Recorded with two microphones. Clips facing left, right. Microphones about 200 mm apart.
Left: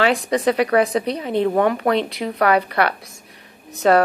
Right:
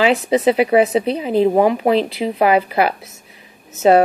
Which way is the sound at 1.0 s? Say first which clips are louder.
Right 4 dB; 30° right (ahead or behind).